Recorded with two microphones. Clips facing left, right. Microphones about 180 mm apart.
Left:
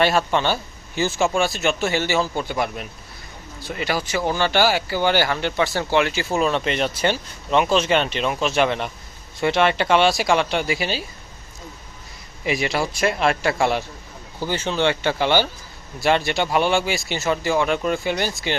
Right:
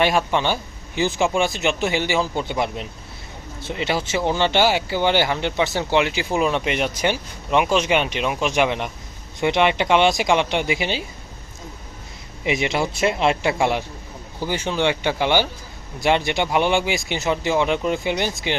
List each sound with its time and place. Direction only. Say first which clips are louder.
0.0 s speech: even; 15° right (ahead or behind)
12.5 s speech: right 1 dB; 20° right (ahead or behind)